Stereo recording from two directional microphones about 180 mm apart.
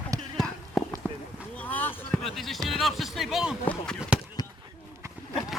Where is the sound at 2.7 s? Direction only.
Centre (ahead or behind).